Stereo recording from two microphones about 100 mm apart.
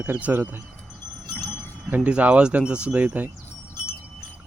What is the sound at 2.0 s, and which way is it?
Speech, 15° right (ahead or behind).